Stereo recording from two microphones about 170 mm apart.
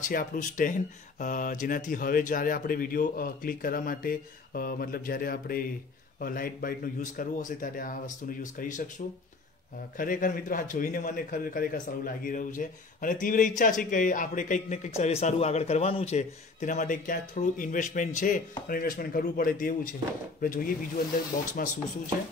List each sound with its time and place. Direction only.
0.1 s a man's voice: 50° left (ahead or behind)
9.9 s a man's voice: 50° left (ahead or behind)